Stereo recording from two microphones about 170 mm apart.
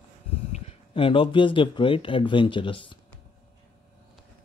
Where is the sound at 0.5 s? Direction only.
35° left (ahead or behind).